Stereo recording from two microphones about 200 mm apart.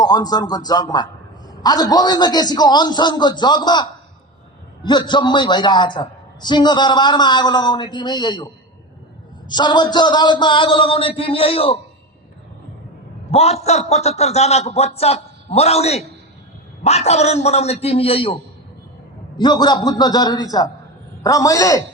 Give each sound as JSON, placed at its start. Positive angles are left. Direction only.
{"t": 0.0, "sound": "a woman's voice", "side_deg": 20}
{"t": 9.5, "sound": "a woman's voice", "side_deg": 20}
{"t": 13.3, "sound": "a man's voice", "side_deg": 30}
{"t": 19.4, "sound": "a woman's voice", "side_deg": 20}